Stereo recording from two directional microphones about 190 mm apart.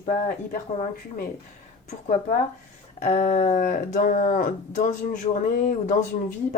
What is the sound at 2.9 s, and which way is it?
A woman's voice, 40° left (ahead or behind).